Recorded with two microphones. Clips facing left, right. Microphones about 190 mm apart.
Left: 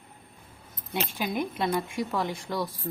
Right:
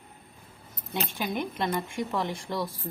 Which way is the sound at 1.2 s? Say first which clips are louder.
Left 1 dB; 5° left (ahead or behind).